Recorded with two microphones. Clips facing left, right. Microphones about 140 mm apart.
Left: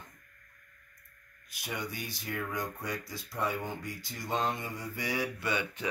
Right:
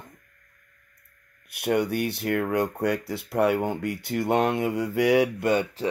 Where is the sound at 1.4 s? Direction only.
65° right (ahead or behind).